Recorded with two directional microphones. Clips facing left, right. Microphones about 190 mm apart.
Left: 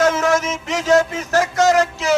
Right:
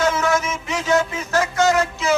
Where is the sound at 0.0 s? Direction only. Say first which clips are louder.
Left 3 dB; 45° left (ahead or behind).